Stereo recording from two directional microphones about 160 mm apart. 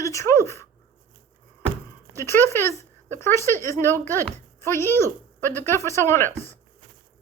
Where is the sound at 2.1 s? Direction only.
15° left (ahead or behind).